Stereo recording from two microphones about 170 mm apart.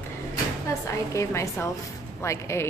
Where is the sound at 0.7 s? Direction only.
15° left (ahead or behind).